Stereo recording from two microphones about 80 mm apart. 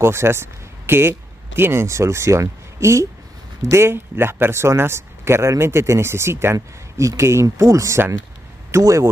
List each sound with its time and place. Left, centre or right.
0.0 s speech: right